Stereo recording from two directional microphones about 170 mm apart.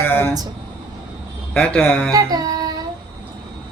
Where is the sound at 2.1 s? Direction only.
20° right (ahead or behind).